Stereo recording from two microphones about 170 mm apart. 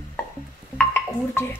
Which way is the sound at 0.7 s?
10° left (ahead or behind).